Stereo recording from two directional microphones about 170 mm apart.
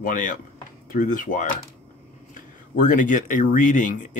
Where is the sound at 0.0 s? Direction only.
50° left (ahead or behind).